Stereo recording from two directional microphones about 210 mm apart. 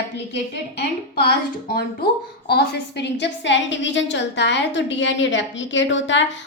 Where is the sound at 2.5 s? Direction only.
50° left (ahead or behind).